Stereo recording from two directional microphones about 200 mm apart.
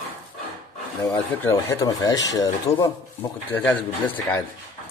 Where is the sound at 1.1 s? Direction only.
10° left (ahead or behind).